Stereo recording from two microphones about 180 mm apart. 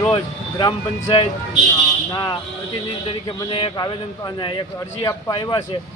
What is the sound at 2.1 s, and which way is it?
A man's voice, 25° left (ahead or behind).